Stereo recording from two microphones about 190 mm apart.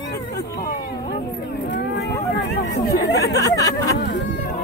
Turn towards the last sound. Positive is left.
turn(degrees=20)  # may be behind; listen again after turning